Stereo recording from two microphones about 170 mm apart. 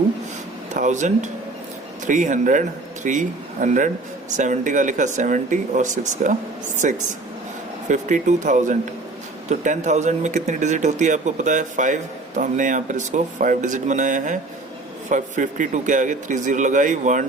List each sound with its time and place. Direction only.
0.7 s speech: 45° right (ahead or behind)